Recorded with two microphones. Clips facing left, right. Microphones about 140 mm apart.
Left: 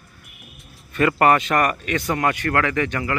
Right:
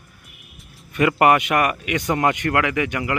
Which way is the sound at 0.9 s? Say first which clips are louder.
Right 1 dB; 15° right (ahead or behind).